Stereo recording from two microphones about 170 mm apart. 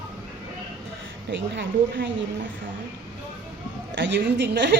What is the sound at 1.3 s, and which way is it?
Speech, 90° right.